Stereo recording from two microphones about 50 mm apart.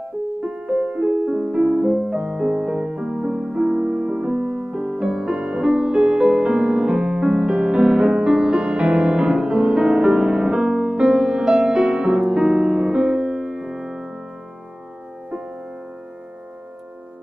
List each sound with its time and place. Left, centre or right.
0.4 s music: right
3.1 s music: centre